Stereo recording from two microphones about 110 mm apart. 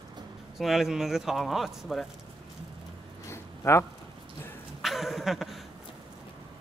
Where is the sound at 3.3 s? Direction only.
25° left (ahead or behind).